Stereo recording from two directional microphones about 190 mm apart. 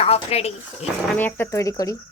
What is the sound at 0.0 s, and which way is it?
Speech, 30° left (ahead or behind).